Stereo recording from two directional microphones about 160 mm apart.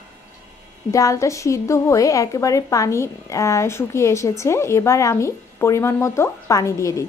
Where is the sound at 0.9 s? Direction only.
20° left (ahead or behind).